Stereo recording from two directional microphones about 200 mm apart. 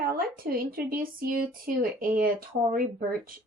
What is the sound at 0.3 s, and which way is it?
Speech, 45° right (ahead or behind).